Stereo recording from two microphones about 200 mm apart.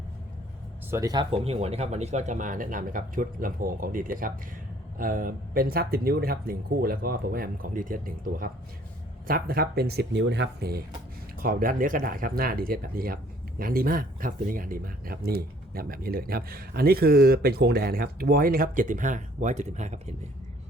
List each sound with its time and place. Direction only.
0.9 s speech: 15° right (ahead or behind); by 20.1 s 35° right (ahead or behind)